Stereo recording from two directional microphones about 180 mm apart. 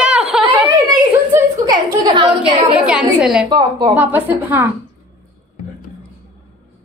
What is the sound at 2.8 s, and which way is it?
Speech, 5° right (ahead or behind).